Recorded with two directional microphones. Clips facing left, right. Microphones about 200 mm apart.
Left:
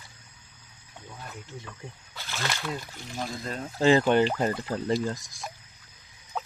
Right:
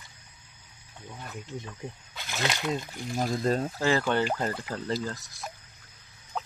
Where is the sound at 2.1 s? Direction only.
20° right (ahead or behind).